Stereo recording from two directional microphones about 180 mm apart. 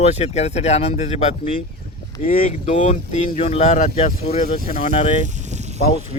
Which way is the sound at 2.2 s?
50° left (ahead or behind).